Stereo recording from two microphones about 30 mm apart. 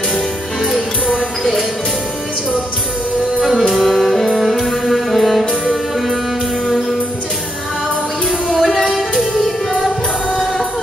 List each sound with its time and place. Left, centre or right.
3.3 s music: centre
3.7 s music: centre
8.5 s music: centre
8.8 s music: centre
9.8 s music: centre